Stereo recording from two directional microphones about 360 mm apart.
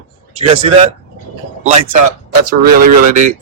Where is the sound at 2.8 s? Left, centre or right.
Right.